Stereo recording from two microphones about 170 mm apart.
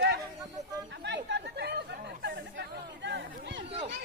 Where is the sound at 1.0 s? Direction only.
90° right.